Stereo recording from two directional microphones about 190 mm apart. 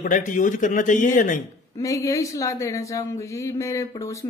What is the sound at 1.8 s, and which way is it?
Speech, 15° left (ahead or behind).